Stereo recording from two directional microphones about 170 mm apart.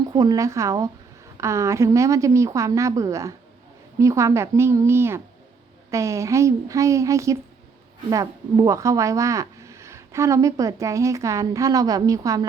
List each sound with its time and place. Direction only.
0.0 s a woman's voice: 25° right (ahead or behind)